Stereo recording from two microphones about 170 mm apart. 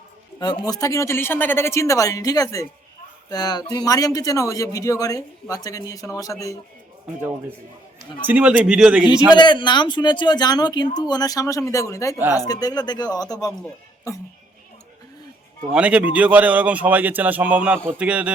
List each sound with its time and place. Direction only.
0.3 s speech: 25° left (ahead or behind)
8.3 s a man's voice: 5° right (ahead or behind)
9.3 s speech: 25° left (ahead or behind)
15.7 s a man's voice: 10° right (ahead or behind)